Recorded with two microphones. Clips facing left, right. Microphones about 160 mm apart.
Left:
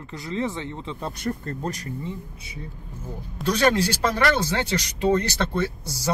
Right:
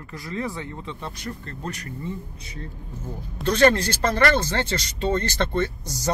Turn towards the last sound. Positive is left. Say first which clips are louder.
# right 1 dB
turn(degrees=10)  # may be behind; listen again after turning